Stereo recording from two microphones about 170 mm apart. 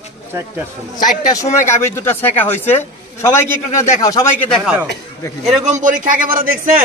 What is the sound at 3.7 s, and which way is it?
Speech, 40° left (ahead or behind).